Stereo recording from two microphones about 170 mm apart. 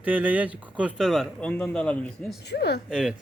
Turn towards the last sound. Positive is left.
turn(degrees=-5)  # may be behind; listen again after turning